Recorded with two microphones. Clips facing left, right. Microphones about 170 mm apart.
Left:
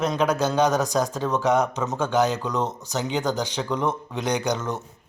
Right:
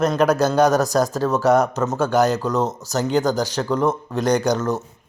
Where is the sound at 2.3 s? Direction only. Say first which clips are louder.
Right 5 dB; 40° right (ahead or behind).